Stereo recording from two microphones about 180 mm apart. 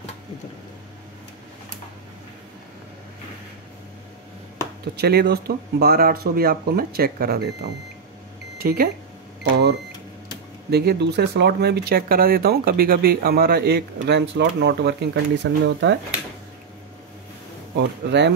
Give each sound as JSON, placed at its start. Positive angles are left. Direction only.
{"t": 4.9, "sound": "speech", "side_deg": -65}
{"t": 8.5, "sound": "speech", "side_deg": -55}
{"t": 9.4, "sound": "speech", "side_deg": -70}
{"t": 14.3, "sound": "speech", "side_deg": -75}
{"t": 17.7, "sound": "speech", "side_deg": -70}